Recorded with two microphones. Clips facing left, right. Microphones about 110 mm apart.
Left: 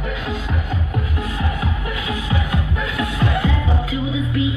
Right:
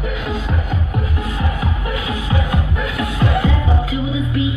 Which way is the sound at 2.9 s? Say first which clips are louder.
Right 2 dB; 25° right (ahead or behind).